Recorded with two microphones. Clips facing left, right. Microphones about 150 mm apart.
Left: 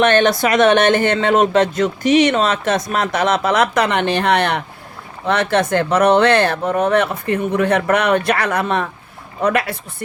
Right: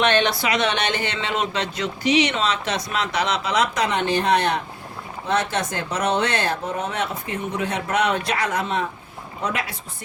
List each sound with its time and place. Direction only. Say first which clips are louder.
0.0 s speech: left 6 dB; 50° left (ahead or behind)